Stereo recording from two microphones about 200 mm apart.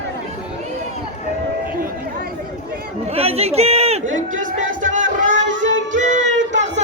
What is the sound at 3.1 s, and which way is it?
Chatter, 30° right (ahead or behind).